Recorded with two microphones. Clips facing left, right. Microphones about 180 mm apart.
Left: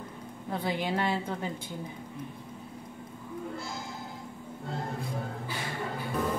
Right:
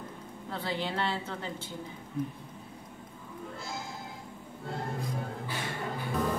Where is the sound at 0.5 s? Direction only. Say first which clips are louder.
Left 3 dB; 15° left (ahead or behind).